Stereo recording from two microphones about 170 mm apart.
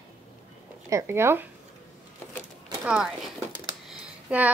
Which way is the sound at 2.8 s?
5° right (ahead or behind).